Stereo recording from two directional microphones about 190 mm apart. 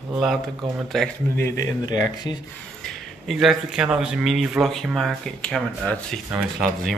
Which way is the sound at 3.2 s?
Centre (ahead or behind).